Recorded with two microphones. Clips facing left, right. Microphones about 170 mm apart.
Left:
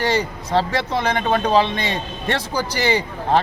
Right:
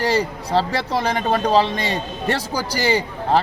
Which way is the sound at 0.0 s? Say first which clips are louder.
Right 1 dB; 35° right (ahead or behind).